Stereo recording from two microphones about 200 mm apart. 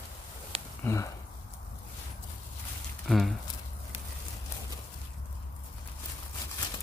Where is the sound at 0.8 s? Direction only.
15° left (ahead or behind).